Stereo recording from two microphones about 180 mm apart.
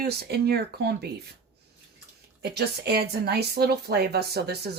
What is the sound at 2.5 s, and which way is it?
A woman's voice, 65° right (ahead or behind).